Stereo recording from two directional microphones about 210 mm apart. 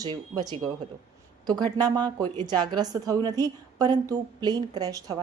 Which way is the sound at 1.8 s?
20° right (ahead or behind).